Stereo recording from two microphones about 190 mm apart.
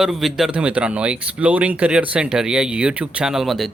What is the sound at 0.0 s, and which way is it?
Speech, centre (ahead or behind).